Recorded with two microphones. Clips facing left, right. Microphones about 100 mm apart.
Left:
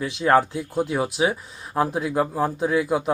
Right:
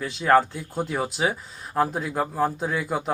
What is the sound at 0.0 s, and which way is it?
Speech, 10° left (ahead or behind).